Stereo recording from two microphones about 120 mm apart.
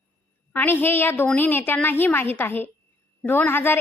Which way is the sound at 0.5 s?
15° left (ahead or behind).